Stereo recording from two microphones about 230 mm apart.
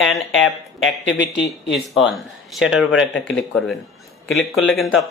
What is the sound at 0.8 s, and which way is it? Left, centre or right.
Speech, left.